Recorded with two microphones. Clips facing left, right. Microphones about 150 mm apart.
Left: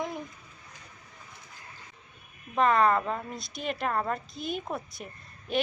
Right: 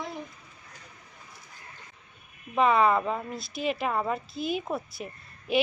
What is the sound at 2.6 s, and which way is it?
A woman's voice, 5° right (ahead or behind).